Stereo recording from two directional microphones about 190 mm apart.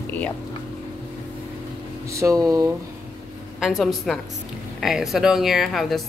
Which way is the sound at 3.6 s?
Centre (ahead or behind).